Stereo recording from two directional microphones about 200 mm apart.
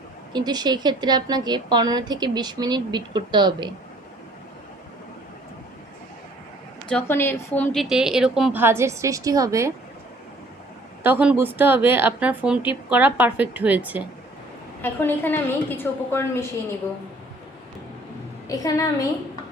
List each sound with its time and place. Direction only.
0.3 s a woman's voice: 20° right (ahead or behind)
6.8 s a woman's voice: 10° left (ahead or behind); by 9.7 s 15° right (ahead or behind)
11.0 s a woman's voice: 10° right (ahead or behind)
14.8 s a woman's voice: 10° left (ahead or behind)
18.4 s a woman's voice: 15° left (ahead or behind)